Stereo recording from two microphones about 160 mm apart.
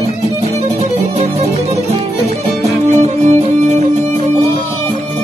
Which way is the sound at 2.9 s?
45° right (ahead or behind).